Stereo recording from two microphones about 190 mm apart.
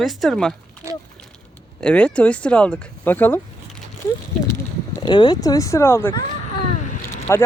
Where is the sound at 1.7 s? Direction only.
5° left (ahead or behind).